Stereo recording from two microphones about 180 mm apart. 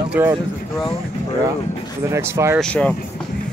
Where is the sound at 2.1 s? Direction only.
15° right (ahead or behind).